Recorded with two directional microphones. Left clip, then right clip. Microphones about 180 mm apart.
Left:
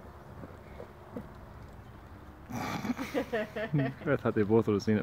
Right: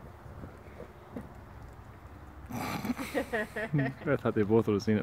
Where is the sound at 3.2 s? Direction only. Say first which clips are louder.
Even; 60° left (ahead or behind).